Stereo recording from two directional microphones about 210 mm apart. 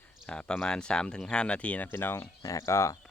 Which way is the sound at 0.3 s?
5° left (ahead or behind).